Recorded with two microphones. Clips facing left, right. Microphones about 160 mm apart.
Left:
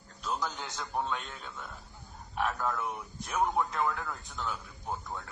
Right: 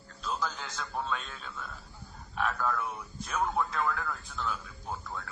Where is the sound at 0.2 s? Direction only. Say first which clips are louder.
Even; 20° left (ahead or behind).